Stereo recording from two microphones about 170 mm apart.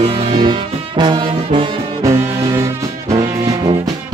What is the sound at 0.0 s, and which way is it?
Brass instrument, 30° right (ahead or behind).